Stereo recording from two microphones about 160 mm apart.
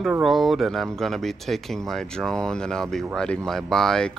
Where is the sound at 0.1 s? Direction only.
Centre (ahead or behind).